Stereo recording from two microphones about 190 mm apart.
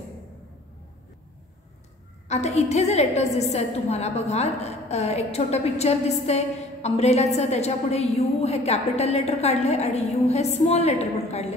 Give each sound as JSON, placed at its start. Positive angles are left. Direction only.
{"t": 2.2, "sound": "a woman's voice", "side_deg": 35}